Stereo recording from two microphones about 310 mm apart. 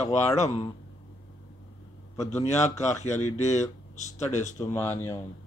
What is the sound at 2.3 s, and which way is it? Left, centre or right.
Speech, left.